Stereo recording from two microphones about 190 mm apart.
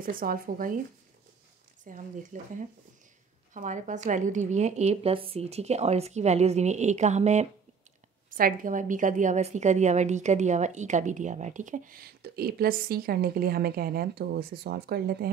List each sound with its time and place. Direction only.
0.0 s a woman's voice: 50° right (ahead or behind)
1.9 s a woman's voice: 45° right (ahead or behind)
8.3 s a woman's voice: 45° right (ahead or behind)